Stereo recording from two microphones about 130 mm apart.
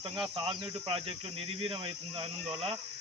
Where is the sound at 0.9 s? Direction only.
45° right (ahead or behind).